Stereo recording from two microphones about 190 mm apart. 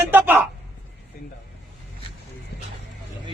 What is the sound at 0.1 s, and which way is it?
Speech, 10° right (ahead or behind).